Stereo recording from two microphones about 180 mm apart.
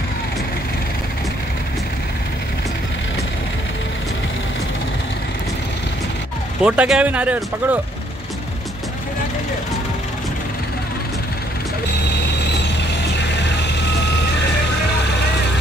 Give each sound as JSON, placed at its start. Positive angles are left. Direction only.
{"t": 6.6, "sound": "speech", "side_deg": -5}
{"t": 11.9, "sound": "mechanisms", "side_deg": 70}
{"t": 13.7, "sound": "reversing beeps", "side_deg": 75}